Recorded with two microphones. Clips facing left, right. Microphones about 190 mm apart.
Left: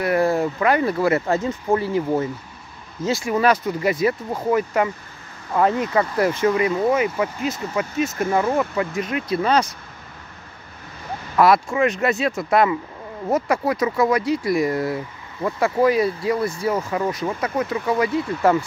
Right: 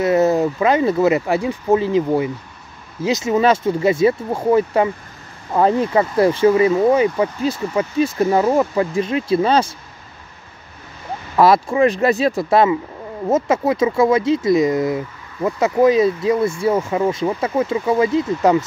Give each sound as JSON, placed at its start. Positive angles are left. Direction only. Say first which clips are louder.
{"t": 0.0, "sound": "speech", "louder": "right 4 dB", "side_deg": -20}
{"t": 11.3, "sound": "speech", "louder": "right 3 dB", "side_deg": -25}